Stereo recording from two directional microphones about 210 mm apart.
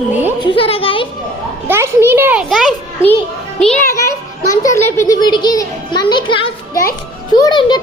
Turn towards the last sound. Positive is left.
turn(degrees=20)  # may be behind; listen again after turning